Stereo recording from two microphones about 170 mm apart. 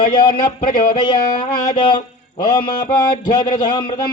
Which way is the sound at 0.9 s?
25° left (ahead or behind).